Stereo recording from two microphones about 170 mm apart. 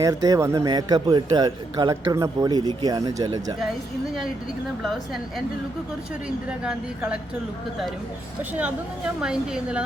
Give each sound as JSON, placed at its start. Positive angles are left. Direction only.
{"t": 0.0, "sound": "a man's voice", "side_deg": -20}
{"t": 4.8, "sound": "a woman's voice", "side_deg": 0}
{"t": 6.2, "sound": "a woman's voice", "side_deg": -5}
{"t": 9.2, "sound": "a woman's voice", "side_deg": -5}